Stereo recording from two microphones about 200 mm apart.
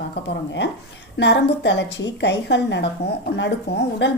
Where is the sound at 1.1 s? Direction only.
60° left (ahead or behind).